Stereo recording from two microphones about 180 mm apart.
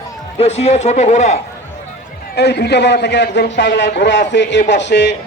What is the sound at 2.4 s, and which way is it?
A man's voice, 65° left (ahead or behind).